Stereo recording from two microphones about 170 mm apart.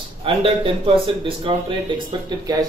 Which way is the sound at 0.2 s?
35° right (ahead or behind).